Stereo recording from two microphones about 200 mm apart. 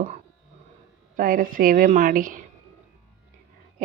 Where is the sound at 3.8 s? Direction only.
40° right (ahead or behind).